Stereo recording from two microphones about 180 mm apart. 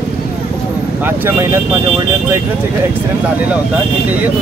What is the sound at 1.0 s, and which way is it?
Speech, 15° right (ahead or behind).